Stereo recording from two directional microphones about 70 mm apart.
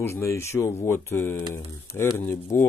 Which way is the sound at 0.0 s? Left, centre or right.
Left.